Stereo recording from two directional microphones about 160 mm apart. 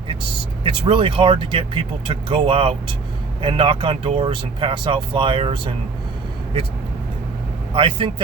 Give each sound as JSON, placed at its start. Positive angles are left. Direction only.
{"t": 0.6, "sound": "speech", "side_deg": -35}
{"t": 7.7, "sound": "speech", "side_deg": -35}